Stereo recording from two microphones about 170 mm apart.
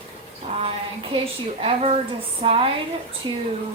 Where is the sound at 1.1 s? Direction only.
35° right (ahead or behind).